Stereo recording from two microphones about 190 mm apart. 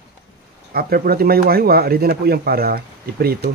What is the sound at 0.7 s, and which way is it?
Speech, 55° right (ahead or behind).